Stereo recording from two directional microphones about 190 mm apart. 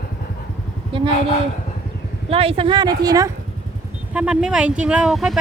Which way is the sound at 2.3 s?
30° right (ahead or behind).